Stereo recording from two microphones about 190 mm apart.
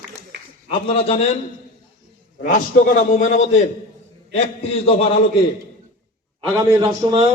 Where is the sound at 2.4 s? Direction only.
45° left (ahead or behind).